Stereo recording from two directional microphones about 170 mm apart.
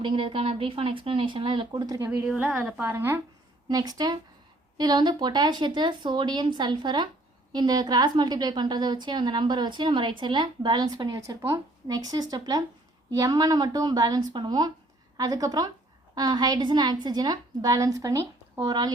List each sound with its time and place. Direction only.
0.0 s speech: 30° right (ahead or behind)
2.0 s a woman's voice: 10° right (ahead or behind)
3.7 s a woman's voice: 20° right (ahead or behind)